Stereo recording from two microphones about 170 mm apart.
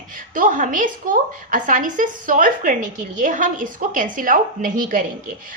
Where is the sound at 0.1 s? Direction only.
50° right (ahead or behind).